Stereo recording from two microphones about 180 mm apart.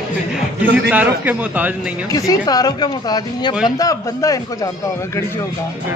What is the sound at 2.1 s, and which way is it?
Speech, 20° left (ahead or behind).